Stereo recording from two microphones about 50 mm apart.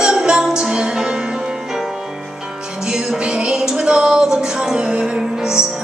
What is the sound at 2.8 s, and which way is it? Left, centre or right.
Music, centre.